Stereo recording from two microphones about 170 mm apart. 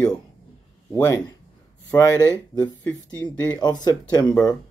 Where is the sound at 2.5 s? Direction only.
25° left (ahead or behind).